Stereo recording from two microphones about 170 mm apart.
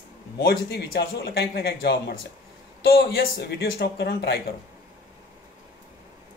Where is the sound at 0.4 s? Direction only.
70° left (ahead or behind).